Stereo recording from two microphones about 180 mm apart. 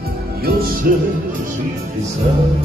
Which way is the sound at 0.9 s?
55° right (ahead or behind).